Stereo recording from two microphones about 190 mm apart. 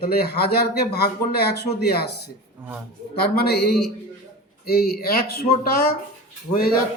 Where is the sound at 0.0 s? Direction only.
55° left (ahead or behind).